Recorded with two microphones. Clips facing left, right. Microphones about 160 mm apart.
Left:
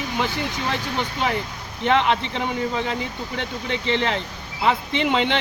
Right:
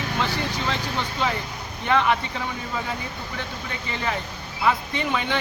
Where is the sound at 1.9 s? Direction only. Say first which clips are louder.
Even; 20° left (ahead or behind).